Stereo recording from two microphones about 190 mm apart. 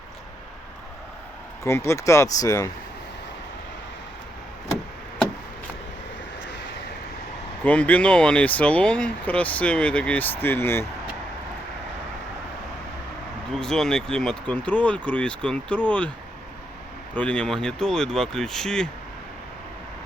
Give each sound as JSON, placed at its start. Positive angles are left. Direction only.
{"t": 1.6, "sound": "speech", "side_deg": 15}
{"t": 7.6, "sound": "speech", "side_deg": 5}
{"t": 13.5, "sound": "speech", "side_deg": 5}
{"t": 17.2, "sound": "speech", "side_deg": 5}